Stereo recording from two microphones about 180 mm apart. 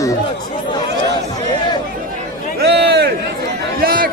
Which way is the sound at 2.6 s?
65° right (ahead or behind).